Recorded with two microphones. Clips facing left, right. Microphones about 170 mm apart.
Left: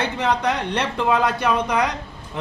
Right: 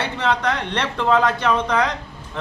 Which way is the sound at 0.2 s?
15° left (ahead or behind).